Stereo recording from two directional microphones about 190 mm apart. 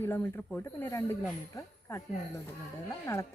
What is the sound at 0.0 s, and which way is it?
Speech, 10° left (ahead or behind).